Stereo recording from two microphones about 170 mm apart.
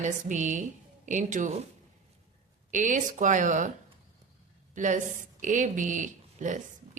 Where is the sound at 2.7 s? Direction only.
50° right (ahead or behind).